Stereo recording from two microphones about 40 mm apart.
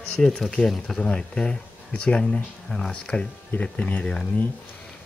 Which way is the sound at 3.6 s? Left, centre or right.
Left.